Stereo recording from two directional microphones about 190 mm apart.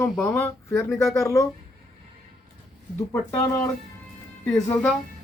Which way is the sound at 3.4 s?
15° left (ahead or behind).